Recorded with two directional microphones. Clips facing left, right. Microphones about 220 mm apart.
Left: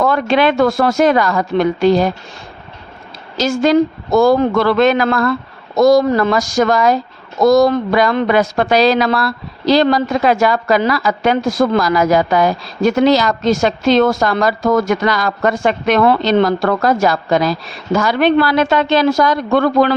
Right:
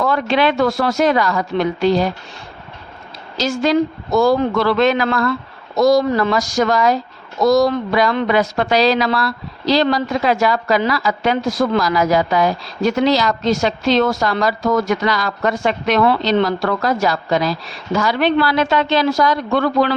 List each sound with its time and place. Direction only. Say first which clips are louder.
0.0 s speech: left 3 dB; 50° left (ahead or behind)
3.3 s speech: left 4 dB; 50° left (ahead or behind)